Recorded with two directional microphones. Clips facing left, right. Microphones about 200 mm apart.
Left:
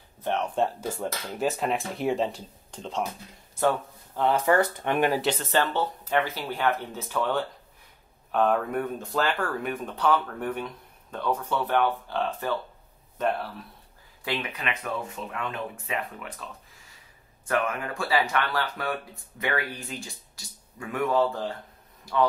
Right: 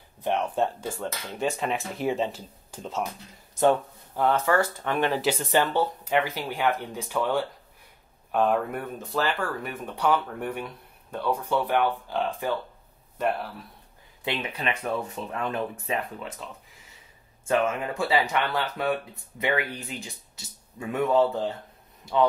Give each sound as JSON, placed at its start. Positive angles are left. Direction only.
{"t": 0.6, "sound": "speech", "side_deg": 5}
{"t": 3.5, "sound": "speech", "side_deg": -20}
{"t": 4.3, "sound": "speech", "side_deg": 15}
{"t": 5.2, "sound": "speech", "side_deg": -10}
{"t": 14.2, "sound": "speech", "side_deg": -20}
{"t": 17.5, "sound": "speech", "side_deg": -25}